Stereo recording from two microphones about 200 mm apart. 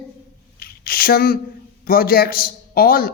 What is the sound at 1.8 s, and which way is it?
A man's voice, 50° left (ahead or behind).